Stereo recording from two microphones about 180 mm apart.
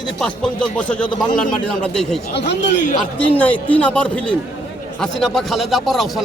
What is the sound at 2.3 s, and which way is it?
Speech, 75° left (ahead or behind).